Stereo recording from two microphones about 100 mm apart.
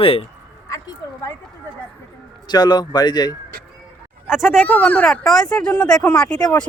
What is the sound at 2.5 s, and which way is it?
Speech, 45° left (ahead or behind).